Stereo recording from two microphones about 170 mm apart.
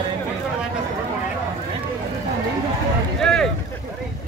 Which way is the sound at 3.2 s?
5° left (ahead or behind).